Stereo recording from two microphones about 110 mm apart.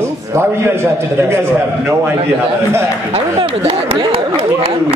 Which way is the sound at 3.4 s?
55° right (ahead or behind).